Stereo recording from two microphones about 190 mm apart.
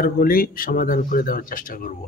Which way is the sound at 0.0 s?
50° left (ahead or behind).